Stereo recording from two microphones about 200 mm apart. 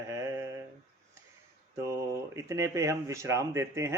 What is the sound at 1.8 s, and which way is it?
A man's voice, 15° right (ahead or behind).